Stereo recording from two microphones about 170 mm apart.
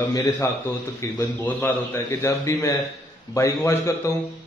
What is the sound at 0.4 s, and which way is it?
A man's voice, 15° left (ahead or behind).